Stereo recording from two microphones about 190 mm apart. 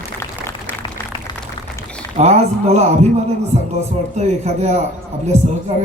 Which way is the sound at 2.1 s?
35° right (ahead or behind).